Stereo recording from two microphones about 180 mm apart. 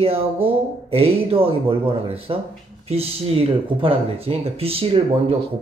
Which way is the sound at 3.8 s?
30° right (ahead or behind).